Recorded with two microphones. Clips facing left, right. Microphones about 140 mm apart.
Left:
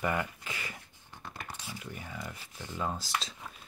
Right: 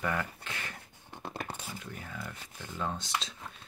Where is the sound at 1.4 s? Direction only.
60° right (ahead or behind).